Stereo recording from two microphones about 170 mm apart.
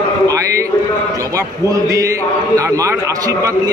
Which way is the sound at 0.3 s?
20° right (ahead or behind).